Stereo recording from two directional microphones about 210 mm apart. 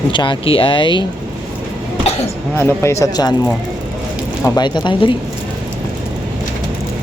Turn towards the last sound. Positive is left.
turn(degrees=25)  # may be behind; listen again after turning